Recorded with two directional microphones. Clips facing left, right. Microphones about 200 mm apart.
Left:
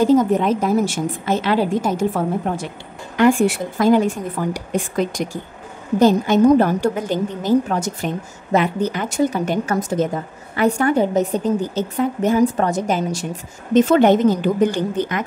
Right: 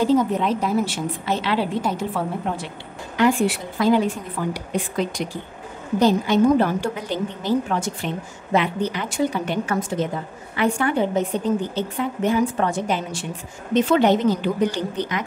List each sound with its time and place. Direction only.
0.0 s a woman's voice: 45° left (ahead or behind)